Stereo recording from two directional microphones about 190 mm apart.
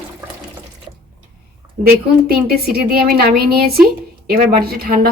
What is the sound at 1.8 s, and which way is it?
A woman's voice, 55° right (ahead or behind).